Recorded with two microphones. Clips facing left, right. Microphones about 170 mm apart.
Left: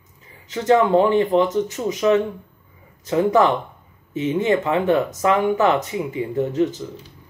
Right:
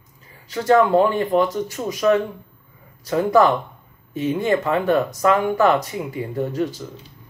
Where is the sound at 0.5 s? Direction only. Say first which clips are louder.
Even; 20° left (ahead or behind).